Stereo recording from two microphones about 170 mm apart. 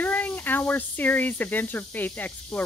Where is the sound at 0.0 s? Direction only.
10° left (ahead or behind).